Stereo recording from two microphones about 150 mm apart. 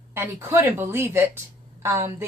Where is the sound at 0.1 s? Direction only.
15° right (ahead or behind).